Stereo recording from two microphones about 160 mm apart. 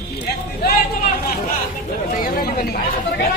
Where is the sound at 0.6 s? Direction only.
85° left.